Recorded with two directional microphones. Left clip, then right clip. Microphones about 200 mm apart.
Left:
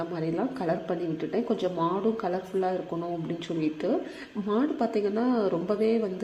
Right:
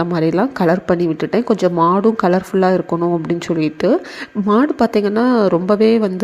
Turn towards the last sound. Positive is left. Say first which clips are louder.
# right 12 dB
turn(degrees=-35)  # may be behind; listen again after turning